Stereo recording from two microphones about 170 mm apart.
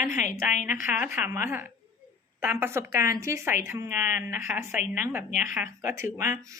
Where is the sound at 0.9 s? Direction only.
15° right (ahead or behind).